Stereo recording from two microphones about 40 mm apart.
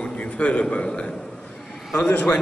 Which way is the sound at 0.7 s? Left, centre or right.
Left.